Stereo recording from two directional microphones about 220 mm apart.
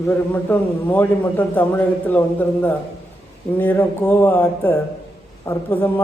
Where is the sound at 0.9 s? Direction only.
10° left (ahead or behind).